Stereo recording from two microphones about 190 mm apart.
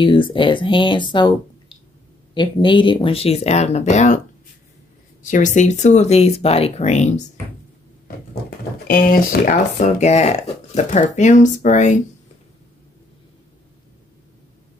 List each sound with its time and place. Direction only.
0.0 s speech: 25° left (ahead or behind)
5.2 s speech: 40° left (ahead or behind)
8.8 s speech: 50° left (ahead or behind)